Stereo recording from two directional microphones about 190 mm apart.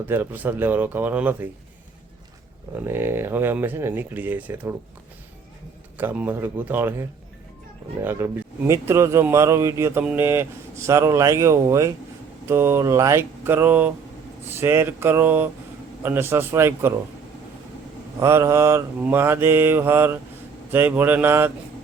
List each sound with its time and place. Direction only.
0.1 s a man's voice: 10° right (ahead or behind)
2.7 s a man's voice: 10° right (ahead or behind)
6.0 s a man's voice: 10° right (ahead or behind)
8.0 s a man's voice: 10° right (ahead or behind)
18.2 s a man's voice: 15° right (ahead or behind)